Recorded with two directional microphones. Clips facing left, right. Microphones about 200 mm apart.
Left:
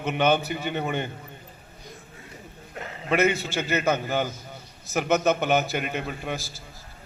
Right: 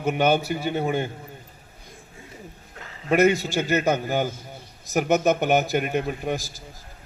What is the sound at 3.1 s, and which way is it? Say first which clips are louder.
A man's voice: right 4 dB; 15° right (ahead or behind).